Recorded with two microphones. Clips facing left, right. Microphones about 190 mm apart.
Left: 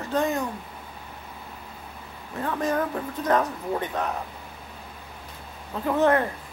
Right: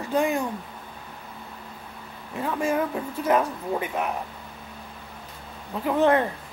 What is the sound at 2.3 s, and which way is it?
A woman's voice, 10° right (ahead or behind).